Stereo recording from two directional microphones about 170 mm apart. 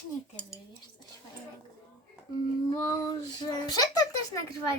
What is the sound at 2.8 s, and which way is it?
A child's voice, 20° left (ahead or behind).